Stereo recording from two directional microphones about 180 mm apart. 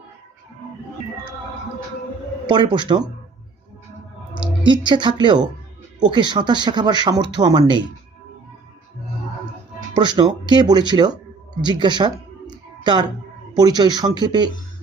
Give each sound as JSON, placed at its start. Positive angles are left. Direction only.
{"t": 2.5, "sound": "speech", "side_deg": -25}
{"t": 4.6, "sound": "speech", "side_deg": -25}
{"t": 9.9, "sound": "speech", "side_deg": -25}